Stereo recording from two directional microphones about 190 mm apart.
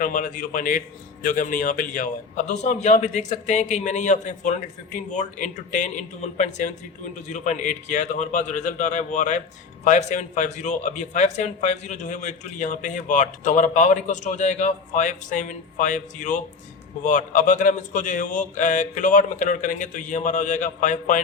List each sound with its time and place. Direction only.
0.0 s a man's voice: 45° left (ahead or behind)